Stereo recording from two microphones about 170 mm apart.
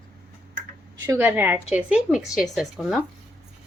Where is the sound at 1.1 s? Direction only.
10° right (ahead or behind).